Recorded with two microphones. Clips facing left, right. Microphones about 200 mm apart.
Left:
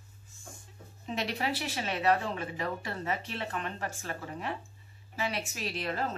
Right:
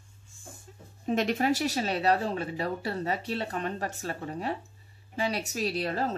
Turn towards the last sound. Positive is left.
turn(degrees=-35)  # may be behind; listen again after turning